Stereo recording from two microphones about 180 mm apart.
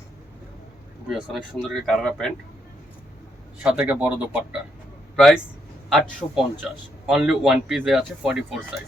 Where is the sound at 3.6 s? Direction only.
5° right (ahead or behind).